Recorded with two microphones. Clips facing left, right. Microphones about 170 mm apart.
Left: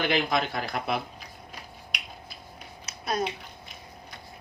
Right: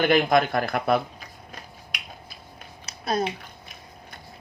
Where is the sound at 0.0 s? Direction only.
50° right (ahead or behind).